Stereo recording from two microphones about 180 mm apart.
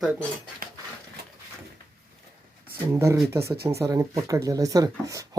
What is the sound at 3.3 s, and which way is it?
Speech, 60° right (ahead or behind).